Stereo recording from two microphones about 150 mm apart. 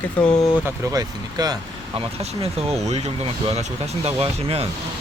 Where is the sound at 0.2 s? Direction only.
10° left (ahead or behind).